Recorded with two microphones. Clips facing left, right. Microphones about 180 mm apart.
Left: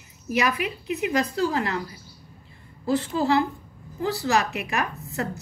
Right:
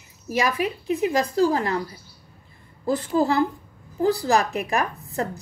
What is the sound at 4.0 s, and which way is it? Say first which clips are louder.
Speech: right 4 dB; 35° right (ahead or behind).